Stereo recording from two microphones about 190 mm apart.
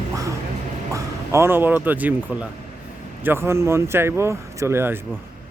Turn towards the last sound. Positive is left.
turn(degrees=-10)  # may be behind; listen again after turning